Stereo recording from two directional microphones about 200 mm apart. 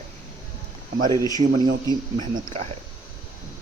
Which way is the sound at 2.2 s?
40° right (ahead or behind).